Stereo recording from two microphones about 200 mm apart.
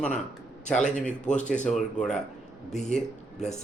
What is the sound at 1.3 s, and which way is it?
Speech, 5° left (ahead or behind).